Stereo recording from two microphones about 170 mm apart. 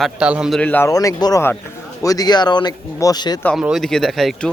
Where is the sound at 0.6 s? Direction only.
10° left (ahead or behind).